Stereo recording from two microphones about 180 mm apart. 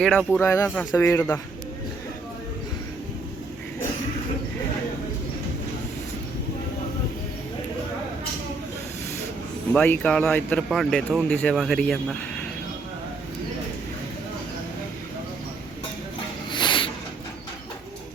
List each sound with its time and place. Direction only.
0.0 s speech: 5° left (ahead or behind)
0.3 s speech: 15° left (ahead or behind)
9.7 s speech: 10° left (ahead or behind)
16.5 s a sound: 25° left (ahead or behind)